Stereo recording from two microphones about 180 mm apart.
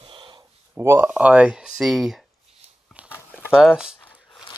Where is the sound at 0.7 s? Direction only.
10° right (ahead or behind).